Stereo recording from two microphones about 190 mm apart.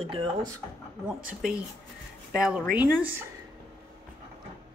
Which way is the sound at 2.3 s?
5° right (ahead or behind).